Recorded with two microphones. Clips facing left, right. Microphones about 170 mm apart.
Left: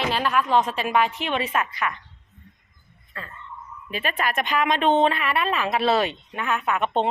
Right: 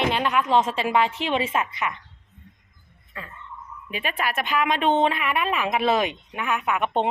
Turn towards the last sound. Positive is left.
turn(degrees=-15)  # may be behind; listen again after turning